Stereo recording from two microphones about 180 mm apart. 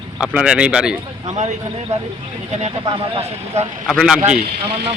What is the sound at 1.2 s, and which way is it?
Speech, 40° right (ahead or behind).